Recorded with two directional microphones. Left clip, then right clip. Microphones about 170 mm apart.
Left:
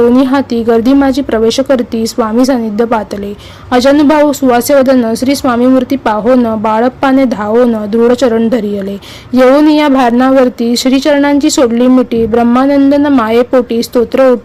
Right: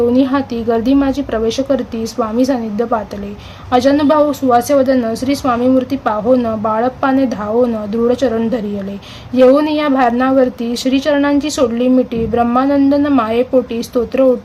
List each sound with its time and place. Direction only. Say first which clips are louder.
0.2 s a woman's voice: left 5 dB; 45° left (ahead or behind)